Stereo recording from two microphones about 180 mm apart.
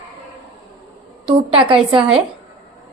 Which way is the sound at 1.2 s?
30° right (ahead or behind).